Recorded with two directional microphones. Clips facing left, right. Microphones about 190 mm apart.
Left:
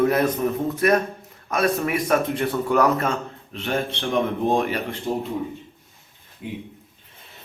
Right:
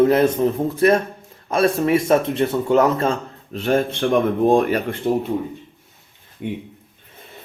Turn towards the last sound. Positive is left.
turn(degrees=-60)  # may be behind; listen again after turning